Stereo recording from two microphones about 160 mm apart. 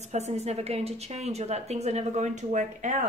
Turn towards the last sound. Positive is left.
turn(degrees=-50)  # may be behind; listen again after turning